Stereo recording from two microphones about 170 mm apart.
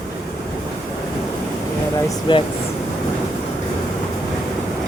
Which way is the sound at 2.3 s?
30° left (ahead or behind).